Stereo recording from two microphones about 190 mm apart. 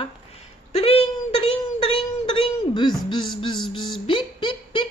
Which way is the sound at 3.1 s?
25° left (ahead or behind).